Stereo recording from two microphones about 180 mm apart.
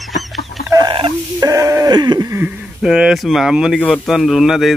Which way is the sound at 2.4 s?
5° right (ahead or behind).